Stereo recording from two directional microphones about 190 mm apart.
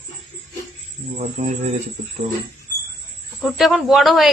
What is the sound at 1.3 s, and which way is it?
Speech, 40° right (ahead or behind).